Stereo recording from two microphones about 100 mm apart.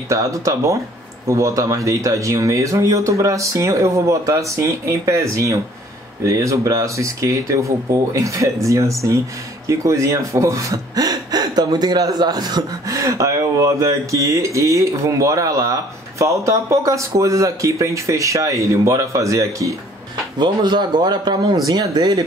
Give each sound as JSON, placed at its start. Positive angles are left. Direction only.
{"t": 0.1, "sound": "speech", "side_deg": -30}
{"t": 20.3, "sound": "speech", "side_deg": -50}